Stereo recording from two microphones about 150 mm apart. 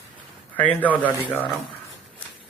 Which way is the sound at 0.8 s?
10° left (ahead or behind).